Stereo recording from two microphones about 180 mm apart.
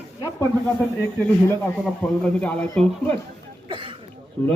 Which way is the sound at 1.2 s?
10° left (ahead or behind).